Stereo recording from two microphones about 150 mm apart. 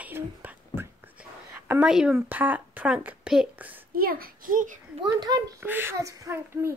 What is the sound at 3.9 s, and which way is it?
Speech, 75° right (ahead or behind).